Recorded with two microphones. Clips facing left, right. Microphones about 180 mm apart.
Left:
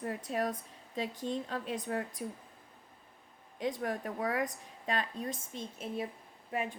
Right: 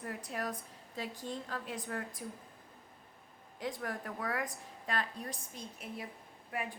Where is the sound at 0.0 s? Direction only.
25° left (ahead or behind).